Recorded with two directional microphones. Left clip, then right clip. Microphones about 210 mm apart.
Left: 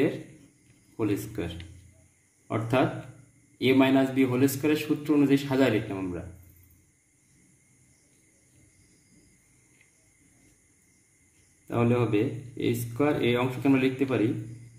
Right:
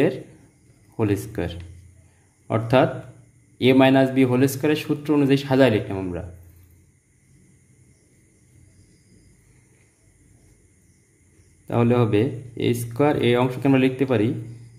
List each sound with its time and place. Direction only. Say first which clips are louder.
0.9 s a man's voice: right 5 dB; 45° right (ahead or behind)
11.6 s speech: right 6 dB; 45° right (ahead or behind)